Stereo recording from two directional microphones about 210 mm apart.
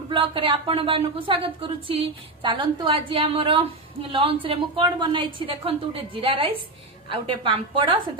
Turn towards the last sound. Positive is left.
turn(degrees=-25)  # may be behind; listen again after turning